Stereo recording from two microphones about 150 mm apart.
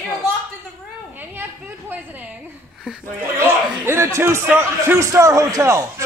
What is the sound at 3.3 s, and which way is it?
A man's voice, 15° right (ahead or behind).